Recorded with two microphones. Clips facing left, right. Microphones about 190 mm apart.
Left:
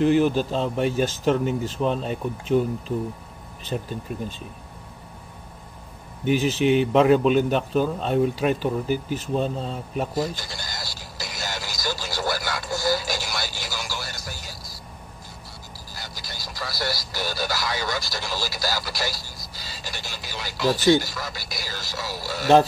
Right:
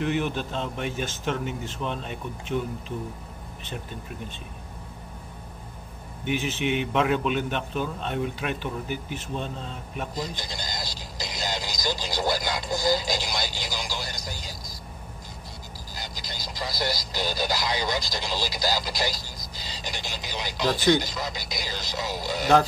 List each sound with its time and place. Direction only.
0.0 s a man's voice: 35° left (ahead or behind)
6.2 s a man's voice: 35° left (ahead or behind)
10.1 s speech: 20° right (ahead or behind)
15.9 s speech: 20° right (ahead or behind)